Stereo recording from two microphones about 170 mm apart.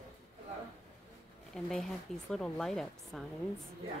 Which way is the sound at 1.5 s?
Centre (ahead or behind).